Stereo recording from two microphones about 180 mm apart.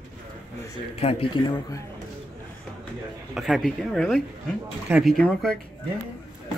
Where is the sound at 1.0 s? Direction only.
35° left (ahead or behind).